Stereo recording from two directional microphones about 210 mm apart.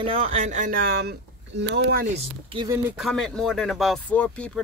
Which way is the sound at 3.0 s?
Centre (ahead or behind).